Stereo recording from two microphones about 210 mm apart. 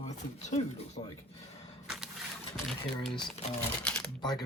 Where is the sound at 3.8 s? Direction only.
5° left (ahead or behind).